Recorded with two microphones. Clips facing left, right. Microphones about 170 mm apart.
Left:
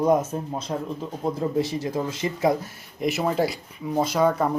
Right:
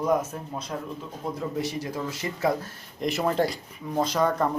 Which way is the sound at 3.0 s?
5° left (ahead or behind).